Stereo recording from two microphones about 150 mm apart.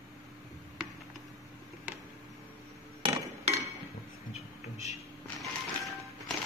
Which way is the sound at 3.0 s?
45° right (ahead or behind).